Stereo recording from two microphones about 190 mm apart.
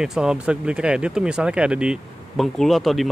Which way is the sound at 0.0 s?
5° right (ahead or behind).